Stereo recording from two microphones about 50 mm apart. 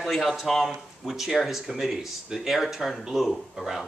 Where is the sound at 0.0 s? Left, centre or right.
Centre.